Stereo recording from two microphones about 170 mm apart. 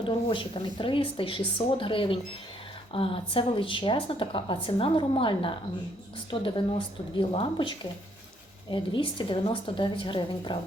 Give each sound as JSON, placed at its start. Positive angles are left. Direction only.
{"t": 0.0, "sound": "a woman's voice", "side_deg": 30}
{"t": 7.2, "sound": "a woman's voice", "side_deg": 30}